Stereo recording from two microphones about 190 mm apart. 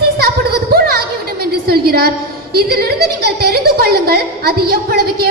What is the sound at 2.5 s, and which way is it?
A woman's voice, 55° right (ahead or behind).